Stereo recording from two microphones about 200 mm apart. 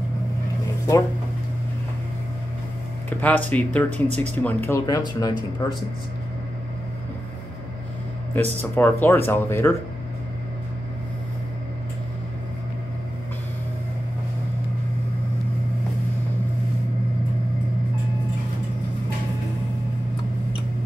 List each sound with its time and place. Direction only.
3.1 s speech: 10° left (ahead or behind); by 5.8 s 25° left (ahead or behind)
8.7 s speech: 10° left (ahead or behind)